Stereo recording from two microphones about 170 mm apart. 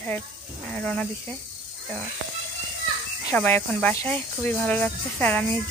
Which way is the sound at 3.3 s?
10° left (ahead or behind).